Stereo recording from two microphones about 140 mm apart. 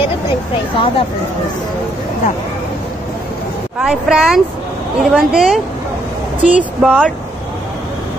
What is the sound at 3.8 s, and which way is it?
Speech, 5° right (ahead or behind).